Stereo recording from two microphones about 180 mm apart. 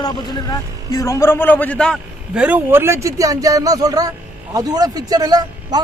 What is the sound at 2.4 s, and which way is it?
Speech, 10° right (ahead or behind).